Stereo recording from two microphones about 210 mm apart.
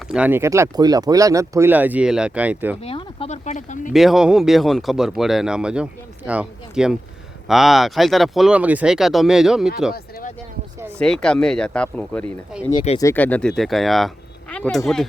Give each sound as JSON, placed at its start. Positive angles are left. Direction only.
{"t": 0.1, "sound": "speech", "side_deg": -10}
{"t": 2.8, "sound": "speech", "side_deg": 30}
{"t": 3.9, "sound": "speech", "side_deg": 0}
{"t": 10.9, "sound": "speech", "side_deg": 5}
{"t": 12.7, "sound": "speech", "side_deg": 30}
{"t": 13.0, "sound": "speech", "side_deg": 10}